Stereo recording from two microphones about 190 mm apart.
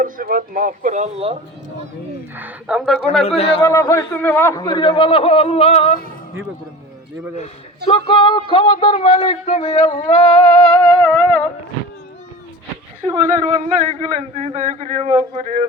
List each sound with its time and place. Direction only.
0.0 s speech: 45° right (ahead or behind)
2.3 s speech: 5° right (ahead or behind)
3.2 s a man's voice: 30° left (ahead or behind)
3.7 s a man's voice: 15° left (ahead or behind)
4.6 s speech: 25° left (ahead or behind)
7.9 s speech: 30° left (ahead or behind)
10.4 s a man's voice: 5° left (ahead or behind)
13.2 s a man's voice: 40° right (ahead or behind)